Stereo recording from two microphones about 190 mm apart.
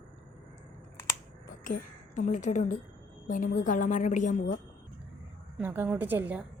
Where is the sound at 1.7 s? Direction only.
45° left (ahead or behind).